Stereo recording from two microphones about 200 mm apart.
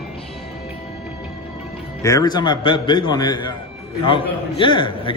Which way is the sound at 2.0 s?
15° left (ahead or behind).